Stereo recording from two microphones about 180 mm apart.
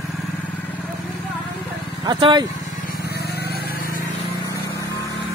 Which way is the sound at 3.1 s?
60° left (ahead or behind).